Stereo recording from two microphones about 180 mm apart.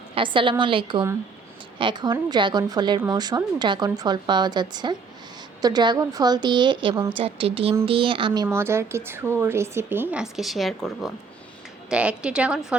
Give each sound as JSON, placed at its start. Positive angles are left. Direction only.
{"t": 0.1, "sound": "speech", "side_deg": -25}
{"t": 6.9, "sound": "a woman's voice", "side_deg": -15}
{"t": 7.2, "sound": "speech", "side_deg": -30}
{"t": 8.4, "sound": "a woman's voice", "side_deg": -15}